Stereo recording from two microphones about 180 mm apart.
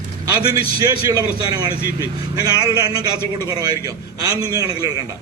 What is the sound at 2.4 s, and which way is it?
A man's voice, 20° right (ahead or behind).